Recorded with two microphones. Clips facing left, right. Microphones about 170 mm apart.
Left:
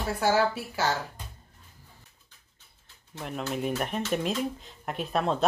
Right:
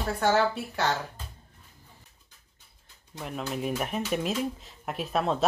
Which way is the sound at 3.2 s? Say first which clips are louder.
Left 1 dB; centre (ahead or behind).